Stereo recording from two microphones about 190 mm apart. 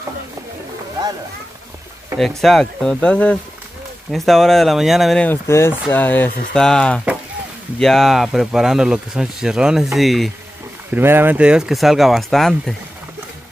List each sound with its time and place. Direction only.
2.1 s speech: centre (ahead or behind)
10.9 s speech: 10° right (ahead or behind)